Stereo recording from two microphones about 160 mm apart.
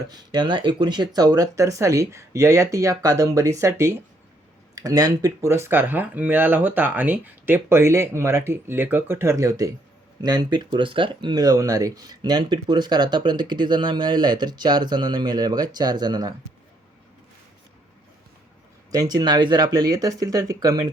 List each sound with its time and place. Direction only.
0.1 s speech: 30° right (ahead or behind)
18.9 s speech: 25° right (ahead or behind)